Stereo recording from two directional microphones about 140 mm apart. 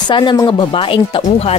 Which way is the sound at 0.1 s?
35° left (ahead or behind).